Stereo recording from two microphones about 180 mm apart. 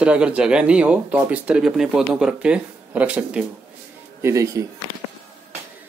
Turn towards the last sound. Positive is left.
turn(degrees=-20)  # may be behind; listen again after turning